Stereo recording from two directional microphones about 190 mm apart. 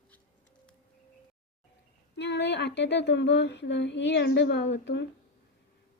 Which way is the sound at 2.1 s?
65° left (ahead or behind).